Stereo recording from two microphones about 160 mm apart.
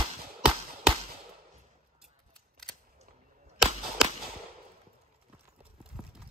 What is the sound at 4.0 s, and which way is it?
Fireworks, 5° right (ahead or behind).